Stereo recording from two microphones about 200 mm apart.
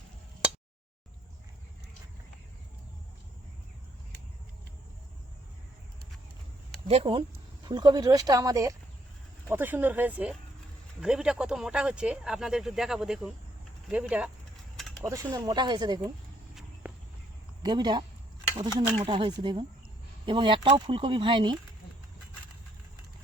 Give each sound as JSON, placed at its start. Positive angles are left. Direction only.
{"t": 6.8, "sound": "speech", "side_deg": -30}
{"t": 15.0, "sound": "speech", "side_deg": -15}
{"t": 16.8, "sound": "walk", "side_deg": -10}
{"t": 17.6, "sound": "speech", "side_deg": -20}